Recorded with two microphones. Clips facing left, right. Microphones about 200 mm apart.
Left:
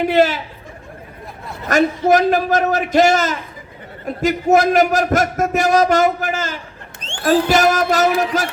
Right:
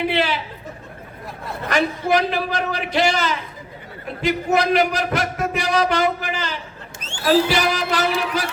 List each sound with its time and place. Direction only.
0.0 s a man's voice: 45° left (ahead or behind)
1.6 s a man's voice: 45° left (ahead or behind)